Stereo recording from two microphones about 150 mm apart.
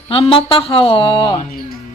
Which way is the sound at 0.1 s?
35° left (ahead or behind).